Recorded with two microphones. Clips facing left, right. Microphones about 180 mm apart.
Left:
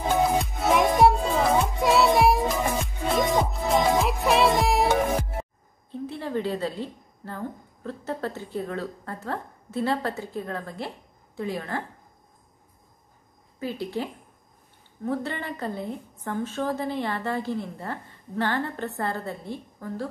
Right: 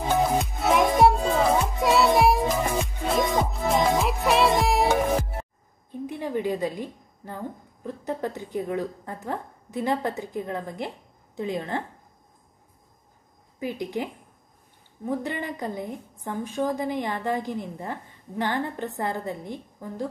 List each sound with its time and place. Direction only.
0.4 s music: centre (ahead or behind)
5.9 s a woman's voice: 15° right (ahead or behind)
13.6 s a woman's voice: 15° right (ahead or behind)